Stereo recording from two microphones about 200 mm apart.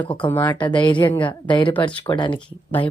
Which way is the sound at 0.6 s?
25° left (ahead or behind).